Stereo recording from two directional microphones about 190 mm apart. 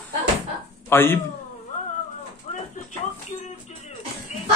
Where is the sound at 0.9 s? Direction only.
10° left (ahead or behind).